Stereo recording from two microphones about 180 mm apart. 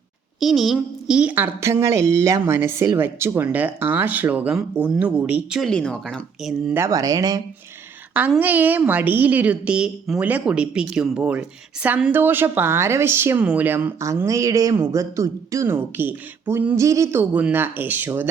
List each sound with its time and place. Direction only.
0.3 s speech: centre (ahead or behind)
6.8 s speech: 20° right (ahead or behind)
8.1 s speech: 10° right (ahead or behind)